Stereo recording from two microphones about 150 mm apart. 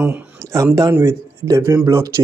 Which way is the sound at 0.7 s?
20° right (ahead or behind).